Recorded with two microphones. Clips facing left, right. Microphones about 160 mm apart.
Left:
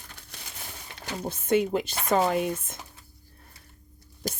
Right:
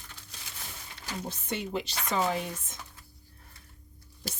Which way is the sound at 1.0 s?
50° left (ahead or behind).